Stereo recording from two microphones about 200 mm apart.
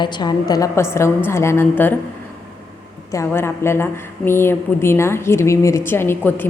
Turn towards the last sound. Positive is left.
turn(degrees=10)  # may be behind; listen again after turning